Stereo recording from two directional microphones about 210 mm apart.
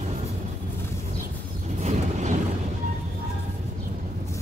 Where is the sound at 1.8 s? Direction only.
35° right (ahead or behind).